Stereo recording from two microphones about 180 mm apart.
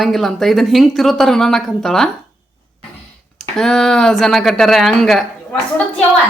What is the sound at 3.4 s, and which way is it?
Speech, 5° left (ahead or behind).